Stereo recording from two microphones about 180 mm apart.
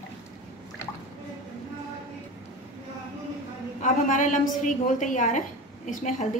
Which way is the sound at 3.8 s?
45° left (ahead or behind).